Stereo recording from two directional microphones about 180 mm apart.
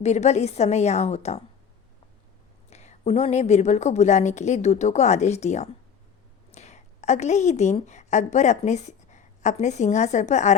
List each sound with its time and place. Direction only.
0.0 s a woman's voice: 40° left (ahead or behind)
2.6 s a woman's voice: 40° left (ahead or behind)